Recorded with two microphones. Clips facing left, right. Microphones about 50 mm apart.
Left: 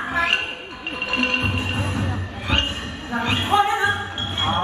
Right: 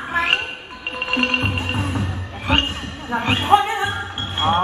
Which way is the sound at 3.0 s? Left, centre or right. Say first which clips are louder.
Right 5 dB; right.